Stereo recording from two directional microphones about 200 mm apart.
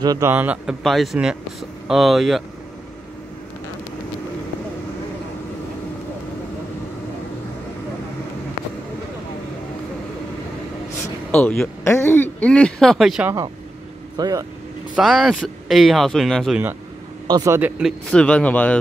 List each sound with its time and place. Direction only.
0.0 s speech: 15° right (ahead or behind); by 2.4 s centre (ahead or behind)
11.0 s speech: 10° left (ahead or behind)
14.1 s speech: 20° right (ahead or behind)
15.0 s speech: centre (ahead or behind)
17.3 s a man's voice: 20° right (ahead or behind)
17.6 s speech: 5° right (ahead or behind)